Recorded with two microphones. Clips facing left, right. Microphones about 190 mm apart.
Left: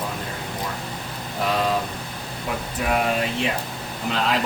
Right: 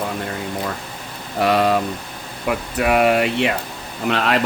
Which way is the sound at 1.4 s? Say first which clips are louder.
Right 6 dB; 70° right (ahead or behind).